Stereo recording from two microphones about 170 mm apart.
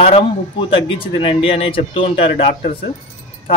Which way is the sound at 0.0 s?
35° left (ahead or behind).